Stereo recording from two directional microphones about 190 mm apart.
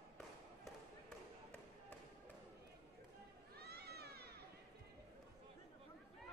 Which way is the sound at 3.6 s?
55° right (ahead or behind).